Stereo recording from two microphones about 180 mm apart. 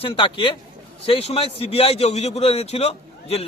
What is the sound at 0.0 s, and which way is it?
A man's voice, 30° left (ahead or behind).